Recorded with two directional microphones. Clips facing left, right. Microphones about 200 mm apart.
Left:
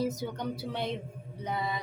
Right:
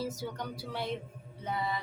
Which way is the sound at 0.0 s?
20° left (ahead or behind).